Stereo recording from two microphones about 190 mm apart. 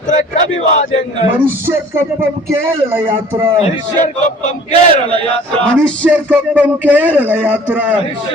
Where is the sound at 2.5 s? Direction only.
10° right (ahead or behind).